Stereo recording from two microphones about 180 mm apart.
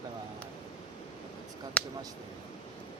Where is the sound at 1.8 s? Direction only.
5° left (ahead or behind).